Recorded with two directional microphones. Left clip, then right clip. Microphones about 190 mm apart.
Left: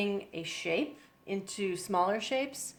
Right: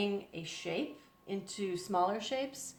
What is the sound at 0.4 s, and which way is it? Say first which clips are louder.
Speech: left 8 dB; 35° left (ahead or behind).